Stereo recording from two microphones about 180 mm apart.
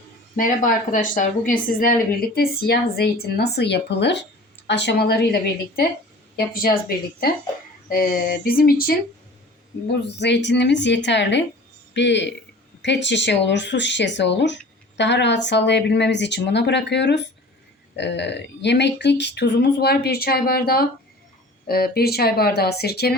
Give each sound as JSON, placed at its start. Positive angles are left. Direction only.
{"t": 0.3, "sound": "a woman's voice", "side_deg": 45}
{"t": 10.2, "sound": "speech", "side_deg": 75}